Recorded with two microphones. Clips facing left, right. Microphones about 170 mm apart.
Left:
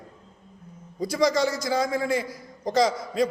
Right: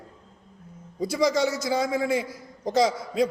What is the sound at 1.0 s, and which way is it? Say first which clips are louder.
A man's voice: even; 5° right (ahead or behind).